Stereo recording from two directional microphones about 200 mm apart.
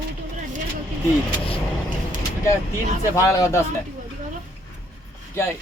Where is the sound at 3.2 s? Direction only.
15° left (ahead or behind).